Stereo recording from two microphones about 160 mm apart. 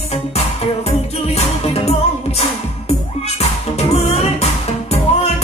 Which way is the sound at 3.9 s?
40° left (ahead or behind).